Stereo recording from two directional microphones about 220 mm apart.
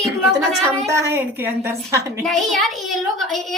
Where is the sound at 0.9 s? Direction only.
10° right (ahead or behind).